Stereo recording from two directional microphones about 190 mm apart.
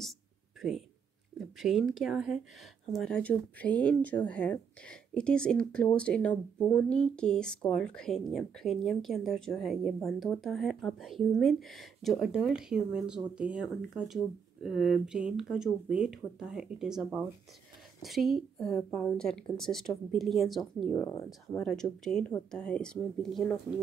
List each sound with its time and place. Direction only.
0.6 s speech: centre (ahead or behind)
20.9 s speech: 15° left (ahead or behind)
21.3 s speech: 5° left (ahead or behind)